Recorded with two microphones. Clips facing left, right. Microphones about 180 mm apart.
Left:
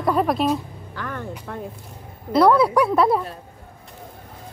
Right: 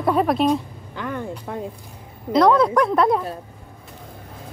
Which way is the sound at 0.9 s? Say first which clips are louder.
Right 3 dB; 15° right (ahead or behind).